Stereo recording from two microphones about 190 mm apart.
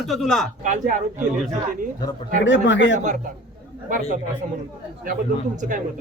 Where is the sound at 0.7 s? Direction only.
40° right (ahead or behind).